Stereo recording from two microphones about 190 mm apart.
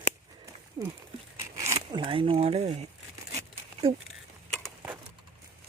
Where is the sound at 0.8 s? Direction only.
25° right (ahead or behind).